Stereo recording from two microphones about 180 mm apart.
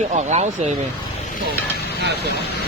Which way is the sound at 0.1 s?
40° right (ahead or behind).